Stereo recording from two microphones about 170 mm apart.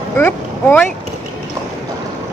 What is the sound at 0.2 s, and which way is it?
Speech, 15° left (ahead or behind).